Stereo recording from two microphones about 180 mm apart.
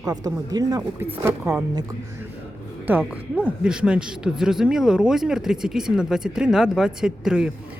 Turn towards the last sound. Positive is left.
turn(degrees=-5)  # may be behind; listen again after turning